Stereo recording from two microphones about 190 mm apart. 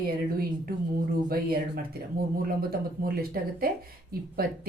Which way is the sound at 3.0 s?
50° right (ahead or behind).